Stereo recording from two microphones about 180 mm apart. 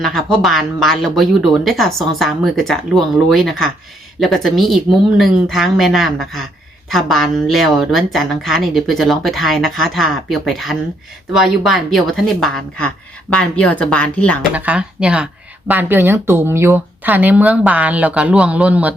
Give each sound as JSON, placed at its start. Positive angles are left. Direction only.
{"t": 0.0, "sound": "speech", "side_deg": 0}
{"t": 14.5, "sound": "speech", "side_deg": -10}